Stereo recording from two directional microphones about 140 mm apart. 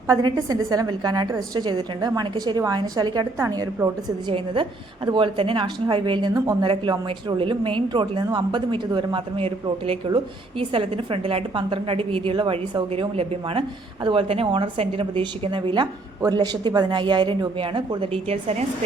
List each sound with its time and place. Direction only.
0.1 s a woman's voice: 25° right (ahead or behind)
4.3 s a woman's voice: 40° right (ahead or behind)